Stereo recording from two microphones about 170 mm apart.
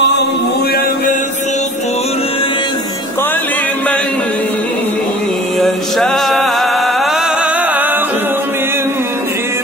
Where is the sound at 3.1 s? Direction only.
10° left (ahead or behind).